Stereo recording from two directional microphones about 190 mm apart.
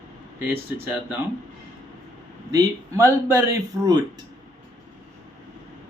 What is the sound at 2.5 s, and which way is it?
A man's voice, 15° right (ahead or behind).